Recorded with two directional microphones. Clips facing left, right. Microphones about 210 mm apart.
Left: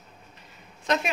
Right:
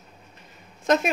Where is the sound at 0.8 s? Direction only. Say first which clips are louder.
Right 5 dB; 45° right (ahead or behind).